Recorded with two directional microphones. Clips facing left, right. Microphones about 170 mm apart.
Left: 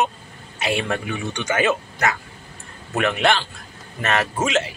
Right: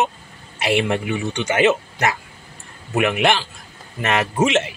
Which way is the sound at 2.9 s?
10° right (ahead or behind).